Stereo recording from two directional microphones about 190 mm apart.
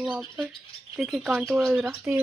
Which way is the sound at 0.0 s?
5° right (ahead or behind).